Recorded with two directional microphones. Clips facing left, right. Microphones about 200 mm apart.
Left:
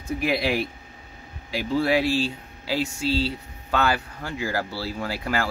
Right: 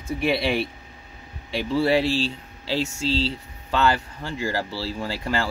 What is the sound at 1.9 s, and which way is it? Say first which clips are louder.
Speech: right 1 dB; 15° left (ahead or behind).